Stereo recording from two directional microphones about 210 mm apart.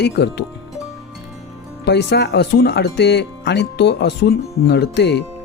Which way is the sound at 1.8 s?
55° left (ahead or behind).